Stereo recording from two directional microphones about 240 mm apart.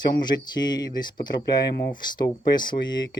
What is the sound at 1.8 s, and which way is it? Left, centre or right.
Speech, centre.